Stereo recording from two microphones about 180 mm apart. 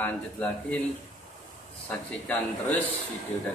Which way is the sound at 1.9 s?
10° left (ahead or behind).